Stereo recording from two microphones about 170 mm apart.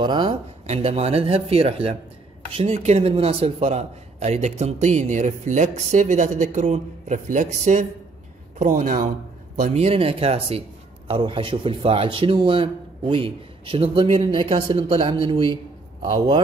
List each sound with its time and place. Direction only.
0.0 s speech: 25° right (ahead or behind)
0.3 s a man's voice: 40° right (ahead or behind)
9.6 s a man's voice: 35° right (ahead or behind)